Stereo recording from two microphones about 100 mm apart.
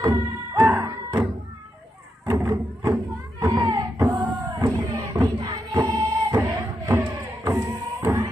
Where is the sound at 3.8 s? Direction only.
30° right (ahead or behind).